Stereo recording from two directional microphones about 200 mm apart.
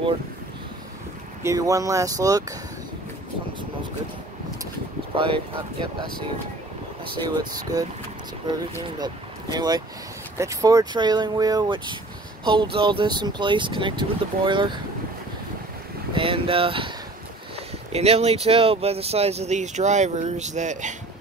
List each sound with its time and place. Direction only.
1.4 s speech: 15° right (ahead or behind)
5.1 s speech: 25° right (ahead or behind)
7.2 s speech: 20° right (ahead or behind)
8.8 s speech: 20° right (ahead or behind)
16.2 s speech: 25° right (ahead or behind)
17.9 s speech: 30° right (ahead or behind)